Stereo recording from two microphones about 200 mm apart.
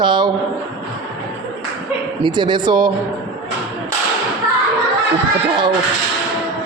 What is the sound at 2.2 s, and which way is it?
Speech, 25° right (ahead or behind).